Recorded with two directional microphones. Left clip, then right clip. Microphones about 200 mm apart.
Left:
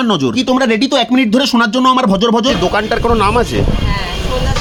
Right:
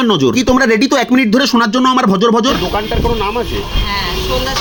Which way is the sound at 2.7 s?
50° left (ahead or behind).